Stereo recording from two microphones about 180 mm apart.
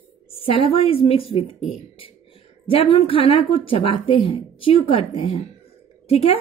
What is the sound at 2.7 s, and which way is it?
A woman's voice, 30° left (ahead or behind).